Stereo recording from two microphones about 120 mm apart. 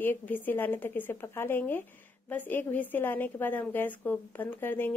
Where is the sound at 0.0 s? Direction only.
15° left (ahead or behind).